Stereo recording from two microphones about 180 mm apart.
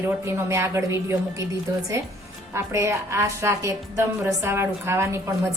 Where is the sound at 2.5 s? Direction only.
15° right (ahead or behind).